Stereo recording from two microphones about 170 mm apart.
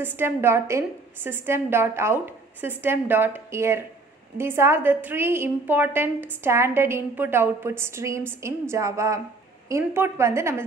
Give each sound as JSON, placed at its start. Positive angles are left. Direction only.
{"t": 0.0, "sound": "a woman's voice", "side_deg": -10}